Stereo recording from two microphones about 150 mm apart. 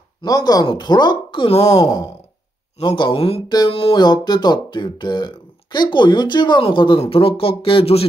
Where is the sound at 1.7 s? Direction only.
25° left (ahead or behind).